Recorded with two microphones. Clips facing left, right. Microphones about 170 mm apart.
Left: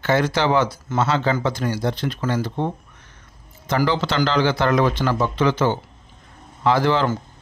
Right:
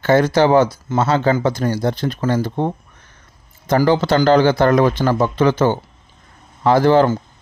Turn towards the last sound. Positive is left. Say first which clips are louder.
# right 6 dB
turn(degrees=-45)  # may be behind; listen again after turning